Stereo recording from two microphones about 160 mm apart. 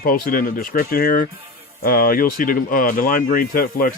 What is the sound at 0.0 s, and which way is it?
Speech, 60° left (ahead or behind).